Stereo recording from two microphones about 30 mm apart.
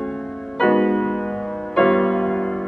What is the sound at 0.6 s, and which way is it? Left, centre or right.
Music, centre.